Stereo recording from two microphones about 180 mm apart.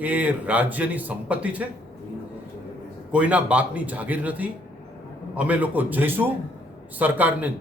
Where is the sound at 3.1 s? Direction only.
5° right (ahead or behind).